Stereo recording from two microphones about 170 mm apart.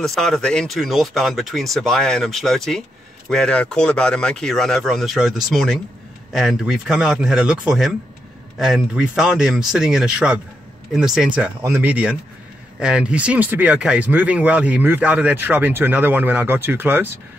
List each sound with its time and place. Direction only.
0.0 s speech: centre (ahead or behind)